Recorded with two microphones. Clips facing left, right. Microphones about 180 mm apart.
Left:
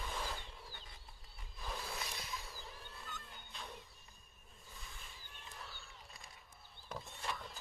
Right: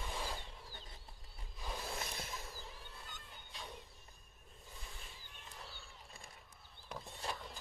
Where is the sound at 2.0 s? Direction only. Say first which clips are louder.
Right 1 dB; 50° right (ahead or behind).